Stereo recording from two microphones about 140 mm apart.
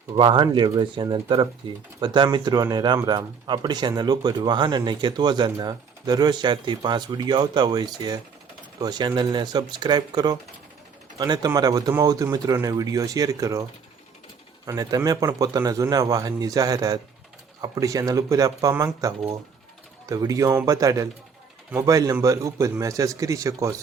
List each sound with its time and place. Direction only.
0.2 s speech: 30° right (ahead or behind)
14.7 s speech: 25° right (ahead or behind)